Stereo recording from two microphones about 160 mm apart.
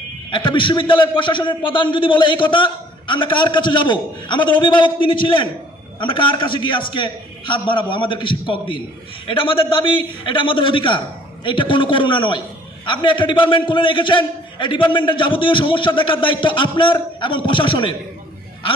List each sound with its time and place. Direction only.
0.3 s a man's voice: 30° left (ahead or behind)